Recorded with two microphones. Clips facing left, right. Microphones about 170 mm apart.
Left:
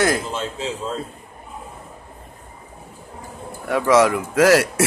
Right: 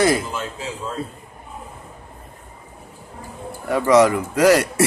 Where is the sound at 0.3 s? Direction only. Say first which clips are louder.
Left 2 dB; 25° left (ahead or behind).